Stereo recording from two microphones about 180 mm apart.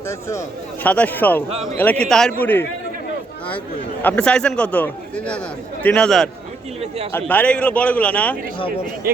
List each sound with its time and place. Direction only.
0.1 s speech: 15° left (ahead or behind)
1.5 s a man's voice: 35° right (ahead or behind)
1.8 s a man's voice: 5° left (ahead or behind)
4.0 s a man's voice: 5° left (ahead or behind)
9.0 s speech: 55° right (ahead or behind)